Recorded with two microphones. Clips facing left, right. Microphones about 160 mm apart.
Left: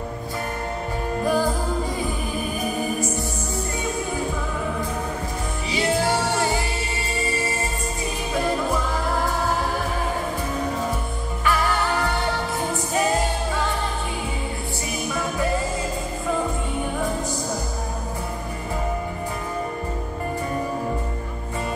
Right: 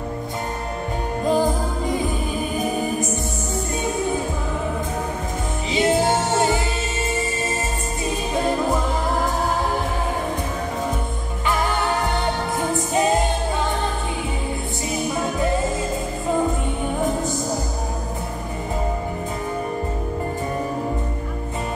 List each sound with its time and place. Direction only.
1.2 s music: 20° right (ahead or behind)
5.7 s music: 20° right (ahead or behind)
11.4 s music: 20° right (ahead or behind)